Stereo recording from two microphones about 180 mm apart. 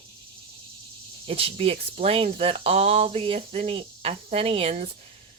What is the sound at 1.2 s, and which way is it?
Speech, 30° right (ahead or behind).